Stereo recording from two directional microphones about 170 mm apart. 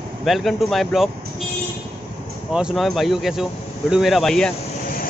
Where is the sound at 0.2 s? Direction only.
Centre (ahead or behind).